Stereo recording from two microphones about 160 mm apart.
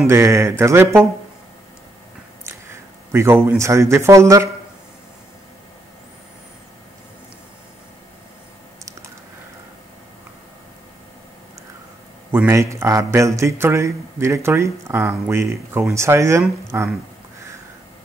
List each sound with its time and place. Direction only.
0.0 s speech: 15° right (ahead or behind)
2.4 s speech: 15° right (ahead or behind)
12.3 s speech: 15° right (ahead or behind)